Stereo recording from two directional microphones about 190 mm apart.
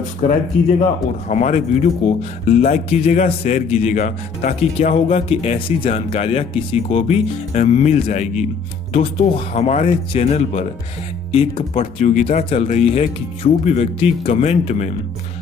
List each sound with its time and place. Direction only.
1.3 s a man's voice: 40° left (ahead or behind)
12.0 s a man's voice: 40° left (ahead or behind)